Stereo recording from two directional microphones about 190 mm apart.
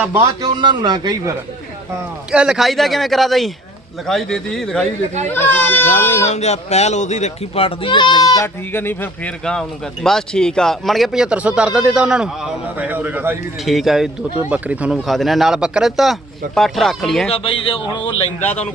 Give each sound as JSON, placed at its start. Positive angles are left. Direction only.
{"t": 0.0, "sound": "a man's voice", "side_deg": -15}
{"t": 2.3, "sound": "speech", "side_deg": -5}
{"t": 5.9, "sound": "speech", "side_deg": 35}
{"t": 17.3, "sound": "a man's voice", "side_deg": 30}
{"t": 18.3, "sound": "a man's voice", "side_deg": 35}